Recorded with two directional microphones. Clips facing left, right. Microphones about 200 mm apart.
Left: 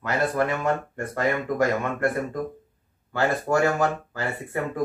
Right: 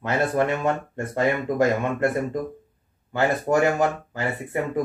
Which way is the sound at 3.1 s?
20° right (ahead or behind).